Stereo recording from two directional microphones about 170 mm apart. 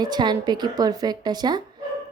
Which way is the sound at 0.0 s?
25° right (ahead or behind).